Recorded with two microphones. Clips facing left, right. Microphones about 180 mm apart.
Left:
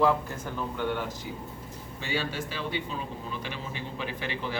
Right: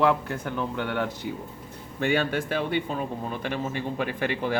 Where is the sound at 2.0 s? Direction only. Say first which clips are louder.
Right 8 dB; 55° right (ahead or behind).